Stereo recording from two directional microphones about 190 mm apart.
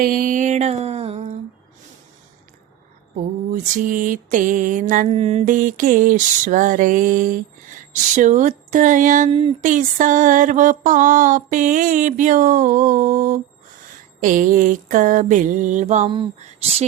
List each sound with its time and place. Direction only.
0.0 s a sound: 45° right (ahead or behind)
3.5 s mantra: 45° right (ahead or behind)
16.0 s speech: 25° right (ahead or behind)